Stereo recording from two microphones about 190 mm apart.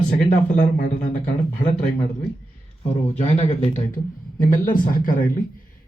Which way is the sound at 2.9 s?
35° left (ahead or behind).